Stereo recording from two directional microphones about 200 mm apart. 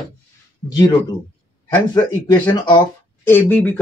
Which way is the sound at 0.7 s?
20° left (ahead or behind).